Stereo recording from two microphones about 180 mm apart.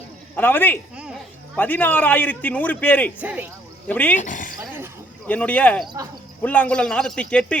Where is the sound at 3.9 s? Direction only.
10° left (ahead or behind).